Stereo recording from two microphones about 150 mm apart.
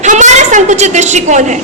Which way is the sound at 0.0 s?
55° right (ahead or behind).